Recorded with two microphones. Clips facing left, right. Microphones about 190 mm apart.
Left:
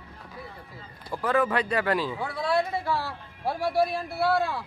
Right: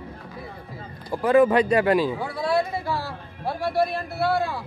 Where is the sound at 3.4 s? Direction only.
10° left (ahead or behind).